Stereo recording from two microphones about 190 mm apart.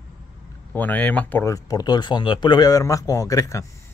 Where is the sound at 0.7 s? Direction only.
10° left (ahead or behind).